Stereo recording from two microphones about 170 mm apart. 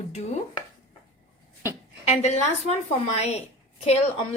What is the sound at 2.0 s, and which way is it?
A woman's voice, 40° left (ahead or behind).